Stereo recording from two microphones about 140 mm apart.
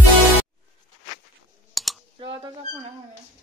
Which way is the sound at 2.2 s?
35° right (ahead or behind).